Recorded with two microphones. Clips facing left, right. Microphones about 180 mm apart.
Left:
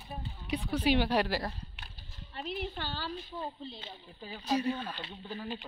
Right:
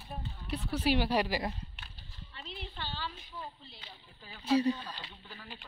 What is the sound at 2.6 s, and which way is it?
Speech, 45° left (ahead or behind).